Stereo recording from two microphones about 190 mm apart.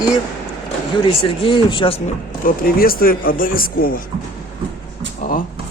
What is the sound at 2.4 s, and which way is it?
Speech, 50° left (ahead or behind).